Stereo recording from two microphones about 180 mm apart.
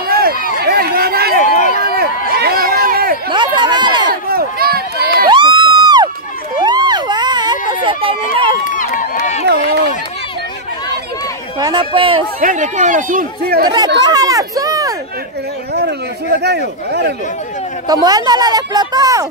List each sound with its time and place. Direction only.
0.1 s run: 55° right (ahead or behind)
0.6 s chatter: 60° right (ahead or behind)
1.8 s a sound: 60° right (ahead or behind)
3.3 s chatter: 25° right (ahead or behind)
4.1 s a sound: 55° right (ahead or behind)
5.3 s crowd: 25° right (ahead or behind)
6.6 s a sound: 25° right (ahead or behind)
8.6 s run: 45° left (ahead or behind)
11.6 s speech: 25° right (ahead or behind)
12.4 s speech: 45° right (ahead or behind)
14.0 s a sound: 20° right (ahead or behind)
16.3 s a man's voice: 65° right (ahead or behind)
17.8 s speech: 20° right (ahead or behind)